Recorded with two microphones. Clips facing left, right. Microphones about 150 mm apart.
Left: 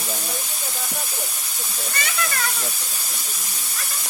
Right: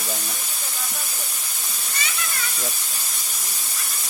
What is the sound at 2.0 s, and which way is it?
Speech, 60° left (ahead or behind).